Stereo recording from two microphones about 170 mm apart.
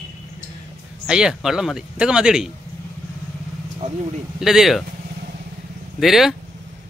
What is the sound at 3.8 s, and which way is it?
Speech, 45° right (ahead or behind).